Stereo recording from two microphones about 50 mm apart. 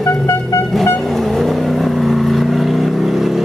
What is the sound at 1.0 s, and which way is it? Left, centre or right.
Vehicle, centre.